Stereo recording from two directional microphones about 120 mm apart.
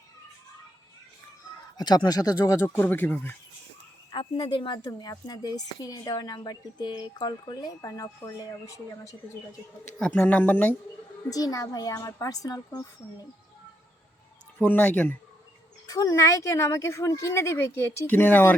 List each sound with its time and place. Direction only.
1.8 s speech: 35° left (ahead or behind); by 3.3 s 15° left (ahead or behind)
4.1 s a woman's voice: 40° left (ahead or behind)
4.9 s a woman's voice: 30° left (ahead or behind)
9.8 s speech: 10° left (ahead or behind)
11.3 s speech: 30° left (ahead or behind)
14.6 s speech: 10° left (ahead or behind)
15.9 s speech: 30° left (ahead or behind)